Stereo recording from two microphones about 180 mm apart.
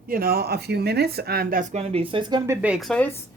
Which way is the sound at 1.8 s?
30° right (ahead or behind).